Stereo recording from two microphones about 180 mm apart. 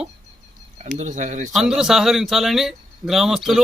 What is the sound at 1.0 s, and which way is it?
Speech, 40° right (ahead or behind).